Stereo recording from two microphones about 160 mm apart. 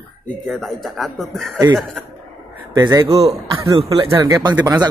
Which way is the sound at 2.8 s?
25° right (ahead or behind).